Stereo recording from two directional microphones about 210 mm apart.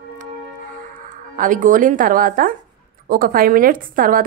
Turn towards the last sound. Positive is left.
turn(degrees=-40)  # may be behind; listen again after turning